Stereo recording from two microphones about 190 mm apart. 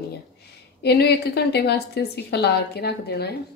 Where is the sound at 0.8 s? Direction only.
60° left (ahead or behind).